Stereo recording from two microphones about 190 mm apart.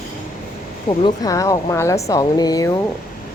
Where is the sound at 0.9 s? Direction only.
20° left (ahead or behind).